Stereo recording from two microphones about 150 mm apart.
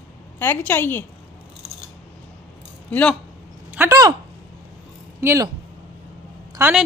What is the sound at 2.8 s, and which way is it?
Speech, 10° left (ahead or behind).